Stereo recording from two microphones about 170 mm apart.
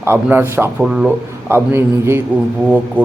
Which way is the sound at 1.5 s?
15° right (ahead or behind).